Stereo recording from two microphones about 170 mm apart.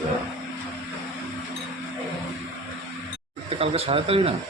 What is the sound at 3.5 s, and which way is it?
Speech, 35° right (ahead or behind).